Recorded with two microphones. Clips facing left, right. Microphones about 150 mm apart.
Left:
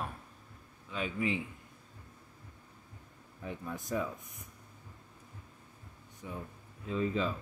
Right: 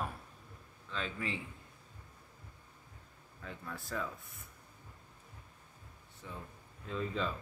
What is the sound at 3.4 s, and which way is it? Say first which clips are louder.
Speech: left 5 dB; 15° left (ahead or behind).